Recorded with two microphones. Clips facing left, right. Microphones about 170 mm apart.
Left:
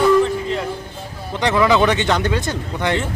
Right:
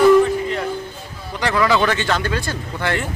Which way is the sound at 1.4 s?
20° left (ahead or behind).